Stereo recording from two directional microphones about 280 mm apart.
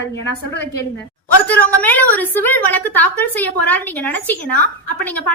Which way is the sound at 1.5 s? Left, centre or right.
Centre.